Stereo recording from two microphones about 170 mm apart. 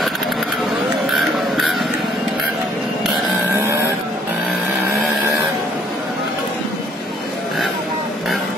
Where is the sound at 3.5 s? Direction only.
15° right (ahead or behind).